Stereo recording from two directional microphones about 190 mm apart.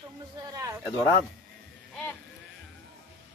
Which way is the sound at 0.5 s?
15° right (ahead or behind).